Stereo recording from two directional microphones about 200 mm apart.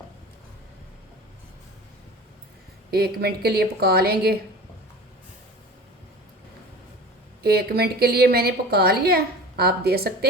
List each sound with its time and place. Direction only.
2.9 s a woman's voice: 50° right (ahead or behind)
7.4 s a woman's voice: 50° right (ahead or behind)